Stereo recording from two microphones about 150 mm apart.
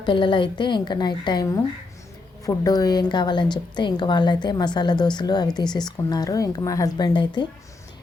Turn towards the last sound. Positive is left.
turn(degrees=30)  # may be behind; listen again after turning